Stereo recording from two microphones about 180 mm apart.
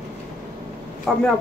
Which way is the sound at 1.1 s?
Centre (ahead or behind).